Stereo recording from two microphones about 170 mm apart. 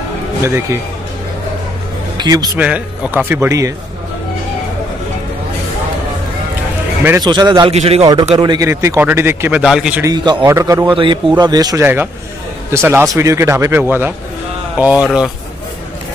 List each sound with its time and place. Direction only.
0.4 s a man's voice: 15° right (ahead or behind)
2.1 s a man's voice: 20° right (ahead or behind)
2.6 s a man's voice: 10° right (ahead or behind)
7.2 s a man's voice: 25° right (ahead or behind)
7.7 s a man's voice: 35° right (ahead or behind)
8.4 s a man's voice: 20° right (ahead or behind); by 10.0 s 5° right (ahead or behind)
10.0 s a man's voice: 25° right (ahead or behind)
11.8 s a man's voice: 10° right (ahead or behind)